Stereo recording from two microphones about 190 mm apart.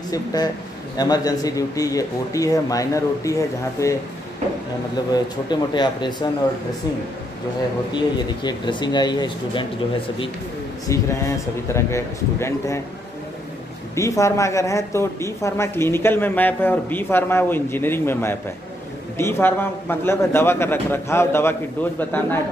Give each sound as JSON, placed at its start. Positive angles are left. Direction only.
{"t": 0.1, "sound": "speech", "side_deg": 20}
{"t": 5.1, "sound": "speech", "side_deg": 25}
{"t": 7.9, "sound": "speech", "side_deg": 25}
{"t": 10.9, "sound": "speech", "side_deg": 15}
{"t": 13.9, "sound": "speech", "side_deg": 15}